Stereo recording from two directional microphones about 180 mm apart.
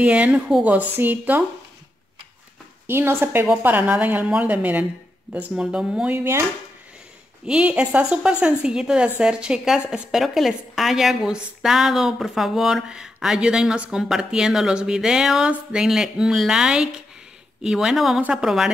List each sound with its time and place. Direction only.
0.0 s a woman's voice: 5° right (ahead or behind)
2.9 s a woman's voice: 15° right (ahead or behind)
7.4 s a woman's voice: 5° right (ahead or behind)